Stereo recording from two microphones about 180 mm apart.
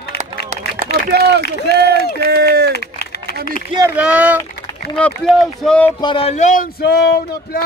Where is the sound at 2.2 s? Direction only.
60° right (ahead or behind).